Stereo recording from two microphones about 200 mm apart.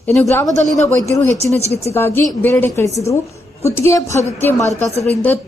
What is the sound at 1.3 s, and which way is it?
Speech, 35° right (ahead or behind).